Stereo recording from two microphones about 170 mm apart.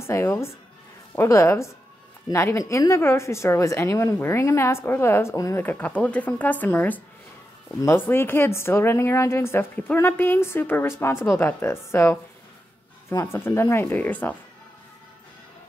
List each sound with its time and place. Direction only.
0.0 s a woman's voice: 15° left (ahead or behind)